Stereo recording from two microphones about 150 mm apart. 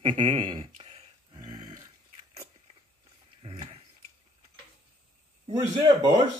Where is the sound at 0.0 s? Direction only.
35° right (ahead or behind).